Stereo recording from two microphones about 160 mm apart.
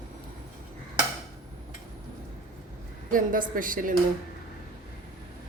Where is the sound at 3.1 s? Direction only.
60° right (ahead or behind).